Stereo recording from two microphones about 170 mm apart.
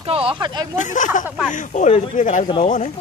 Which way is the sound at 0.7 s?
45° left (ahead or behind).